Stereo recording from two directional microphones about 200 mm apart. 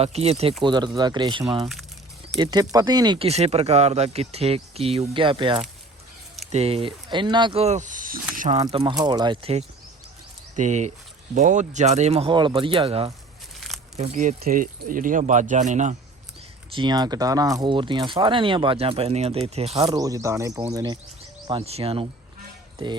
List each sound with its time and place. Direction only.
0.0 s speech: 30° right (ahead or behind)
8.6 s speech: 20° right (ahead or behind); by 16.0 s 35° right (ahead or behind)
16.7 s speech: 20° right (ahead or behind)
19.8 s speech: 15° right (ahead or behind)
21.4 s speech: 30° right (ahead or behind)